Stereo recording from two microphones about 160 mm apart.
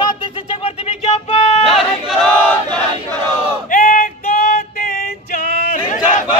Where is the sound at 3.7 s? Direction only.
60° left (ahead or behind).